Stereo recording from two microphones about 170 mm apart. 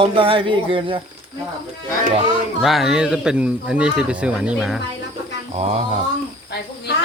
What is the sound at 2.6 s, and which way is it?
Speech, centre (ahead or behind).